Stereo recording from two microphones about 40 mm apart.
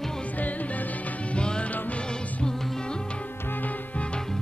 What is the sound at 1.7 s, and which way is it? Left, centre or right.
Music, left.